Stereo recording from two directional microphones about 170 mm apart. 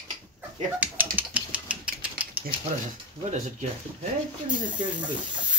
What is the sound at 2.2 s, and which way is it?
Typewriter, 10° right (ahead or behind).